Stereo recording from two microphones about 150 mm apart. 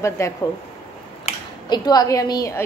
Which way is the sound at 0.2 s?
20° left (ahead or behind).